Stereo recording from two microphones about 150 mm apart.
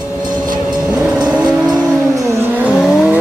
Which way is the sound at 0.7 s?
5° right (ahead or behind).